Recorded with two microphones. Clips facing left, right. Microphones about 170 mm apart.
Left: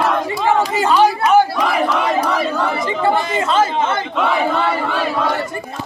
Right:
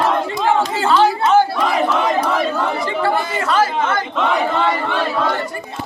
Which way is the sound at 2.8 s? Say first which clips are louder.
Left 1 dB; 20° left (ahead or behind).